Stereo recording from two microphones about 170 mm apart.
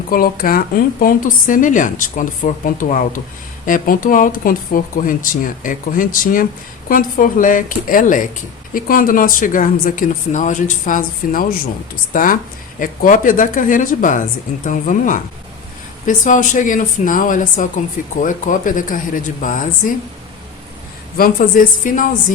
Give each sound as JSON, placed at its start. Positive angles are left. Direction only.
{"t": 0.1, "sound": "speech", "side_deg": 60}
{"t": 21.2, "sound": "speech", "side_deg": 55}